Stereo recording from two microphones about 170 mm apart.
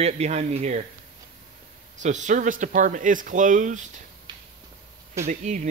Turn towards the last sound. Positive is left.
turn(degrees=-50)  # may be behind; listen again after turning